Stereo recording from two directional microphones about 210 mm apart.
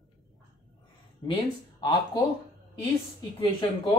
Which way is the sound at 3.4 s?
20° left (ahead or behind).